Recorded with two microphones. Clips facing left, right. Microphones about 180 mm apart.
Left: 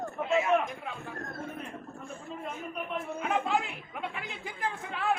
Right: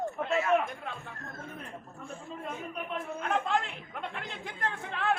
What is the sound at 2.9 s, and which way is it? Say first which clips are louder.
Chatter: left 1 dB; 5° left (ahead or behind).